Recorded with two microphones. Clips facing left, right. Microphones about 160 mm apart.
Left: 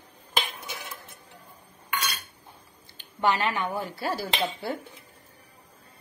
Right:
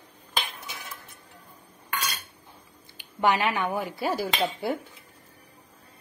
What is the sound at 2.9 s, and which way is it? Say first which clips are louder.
A woman's voice: right 1 dB; 15° right (ahead or behind).